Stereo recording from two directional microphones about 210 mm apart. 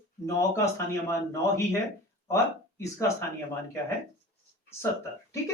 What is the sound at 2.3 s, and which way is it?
Speech, 15° left (ahead or behind).